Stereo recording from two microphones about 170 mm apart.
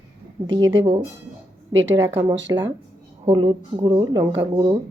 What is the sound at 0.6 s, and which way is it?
A woman's voice, 90° right.